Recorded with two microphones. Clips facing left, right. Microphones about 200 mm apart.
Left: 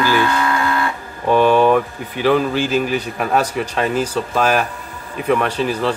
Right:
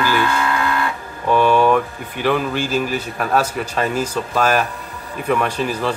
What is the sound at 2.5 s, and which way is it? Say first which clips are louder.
Speech: left 2 dB; 45° right (ahead or behind).